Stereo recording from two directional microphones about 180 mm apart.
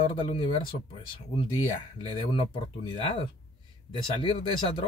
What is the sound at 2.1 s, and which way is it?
Speech, 30° left (ahead or behind).